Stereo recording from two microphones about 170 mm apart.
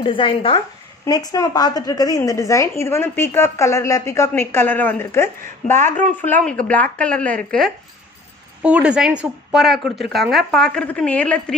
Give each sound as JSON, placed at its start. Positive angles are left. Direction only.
{"t": 0.0, "sound": "a woman's voice", "side_deg": 30}
{"t": 8.6, "sound": "speech", "side_deg": -5}